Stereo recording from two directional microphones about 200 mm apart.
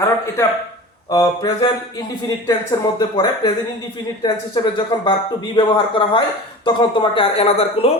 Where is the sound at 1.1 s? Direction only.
15° left (ahead or behind).